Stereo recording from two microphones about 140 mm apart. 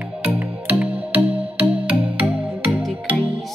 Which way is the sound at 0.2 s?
10° right (ahead or behind).